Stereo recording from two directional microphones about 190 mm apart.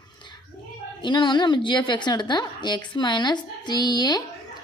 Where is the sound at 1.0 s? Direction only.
25° left (ahead or behind).